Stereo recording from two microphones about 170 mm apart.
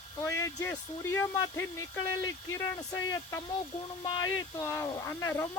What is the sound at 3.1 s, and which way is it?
Speech, 15° left (ahead or behind).